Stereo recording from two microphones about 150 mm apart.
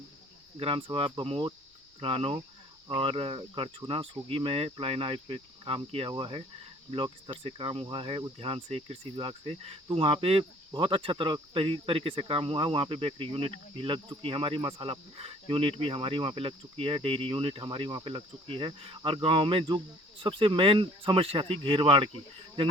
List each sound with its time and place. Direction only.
0.5 s speech: 40° right (ahead or behind)
7.4 s speech: 35° right (ahead or behind)